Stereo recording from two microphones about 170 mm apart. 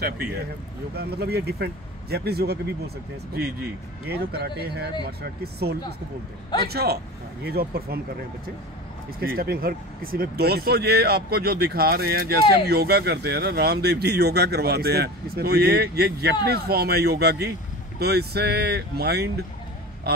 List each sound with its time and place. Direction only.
0.0 s speech: 65° right (ahead or behind)
4.1 s speech: 70° right (ahead or behind)
9.2 s speech: 60° right (ahead or behind)